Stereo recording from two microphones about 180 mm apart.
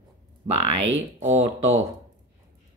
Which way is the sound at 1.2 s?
35° right (ahead or behind).